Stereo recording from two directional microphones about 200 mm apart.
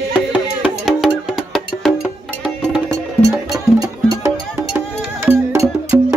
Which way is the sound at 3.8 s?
15° right (ahead or behind).